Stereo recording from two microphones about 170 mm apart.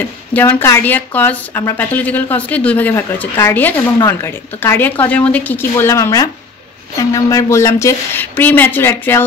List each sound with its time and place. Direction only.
0.3 s speech: 10° left (ahead or behind)